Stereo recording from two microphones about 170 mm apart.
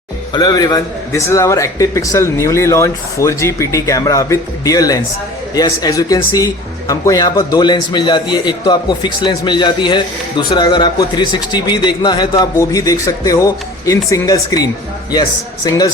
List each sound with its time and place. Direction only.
0.3 s a man's voice: 25° left (ahead or behind)